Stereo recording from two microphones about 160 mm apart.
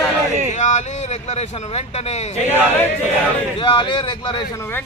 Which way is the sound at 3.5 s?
30° left (ahead or behind).